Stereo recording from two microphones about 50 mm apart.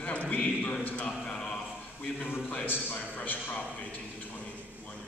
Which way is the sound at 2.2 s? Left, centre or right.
Left.